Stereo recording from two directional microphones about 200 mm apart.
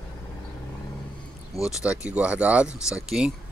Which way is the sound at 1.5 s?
Centre (ahead or behind).